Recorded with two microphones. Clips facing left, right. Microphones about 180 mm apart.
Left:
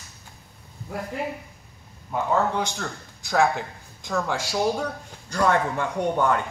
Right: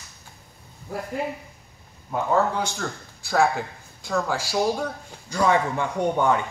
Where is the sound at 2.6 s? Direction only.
5° right (ahead or behind).